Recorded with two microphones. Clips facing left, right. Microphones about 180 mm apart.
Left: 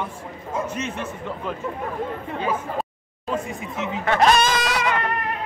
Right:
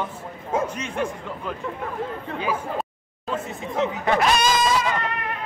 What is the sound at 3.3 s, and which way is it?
Speech, 15° left (ahead or behind).